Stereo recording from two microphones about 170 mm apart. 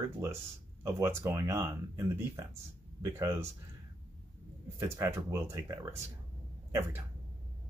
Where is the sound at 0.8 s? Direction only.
15° right (ahead or behind).